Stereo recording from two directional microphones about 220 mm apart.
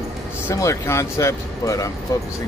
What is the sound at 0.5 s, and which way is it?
Speech, 15° left (ahead or behind).